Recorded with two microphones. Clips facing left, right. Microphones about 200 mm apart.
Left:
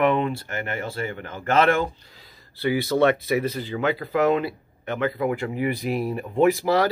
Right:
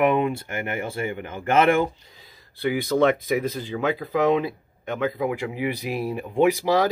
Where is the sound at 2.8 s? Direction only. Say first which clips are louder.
Right 1 dB; 5° left (ahead or behind).